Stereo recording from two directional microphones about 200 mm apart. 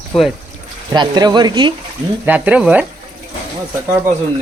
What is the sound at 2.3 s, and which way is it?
Speech, 5° right (ahead or behind).